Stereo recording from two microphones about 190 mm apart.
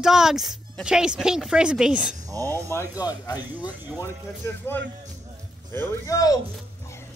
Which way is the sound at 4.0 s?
10° left (ahead or behind).